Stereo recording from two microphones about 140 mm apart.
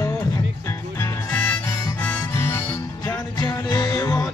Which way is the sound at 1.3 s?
15° left (ahead or behind).